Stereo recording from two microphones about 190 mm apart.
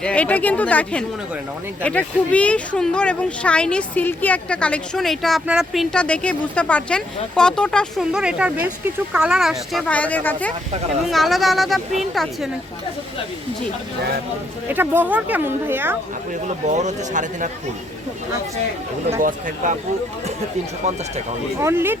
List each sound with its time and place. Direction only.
0.0 s speech: 5° left (ahead or behind)
14.7 s speech: 10° right (ahead or behind)
16.6 s speech: 40° right (ahead or behind)
19.2 s speech: 45° right (ahead or behind)
21.6 s speech: 10° right (ahead or behind)